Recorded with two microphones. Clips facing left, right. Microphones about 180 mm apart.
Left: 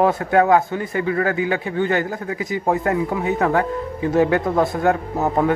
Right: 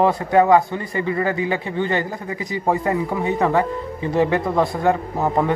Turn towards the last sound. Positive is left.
turn(degrees=5)  # may be behind; listen again after turning